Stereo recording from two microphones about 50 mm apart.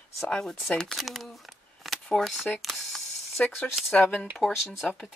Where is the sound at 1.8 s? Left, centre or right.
Centre.